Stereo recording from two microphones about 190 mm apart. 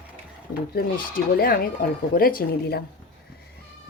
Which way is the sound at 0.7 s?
50° left (ahead or behind).